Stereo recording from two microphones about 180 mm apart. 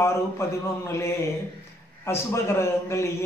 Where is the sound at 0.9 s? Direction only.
15° left (ahead or behind).